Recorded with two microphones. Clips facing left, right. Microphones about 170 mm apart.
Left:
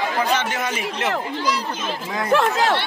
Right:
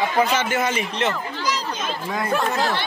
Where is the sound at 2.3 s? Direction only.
90° left.